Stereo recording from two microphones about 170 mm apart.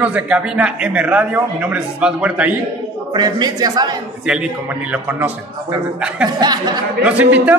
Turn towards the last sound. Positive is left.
turn(degrees=-10)  # may be behind; listen again after turning